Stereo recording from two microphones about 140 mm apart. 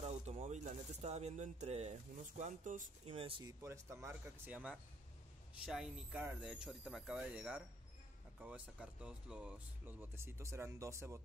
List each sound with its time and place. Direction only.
0.0 s speech: 50° right (ahead or behind)
3.1 s speech: 40° right (ahead or behind)
3.4 s speech: 20° right (ahead or behind)
4.5 s speech: 10° right (ahead or behind)